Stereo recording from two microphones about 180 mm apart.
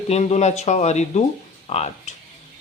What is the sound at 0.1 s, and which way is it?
Speech, 35° left (ahead or behind).